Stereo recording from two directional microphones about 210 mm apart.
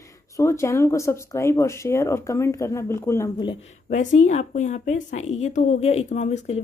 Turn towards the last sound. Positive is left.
turn(degrees=30)  # may be behind; listen again after turning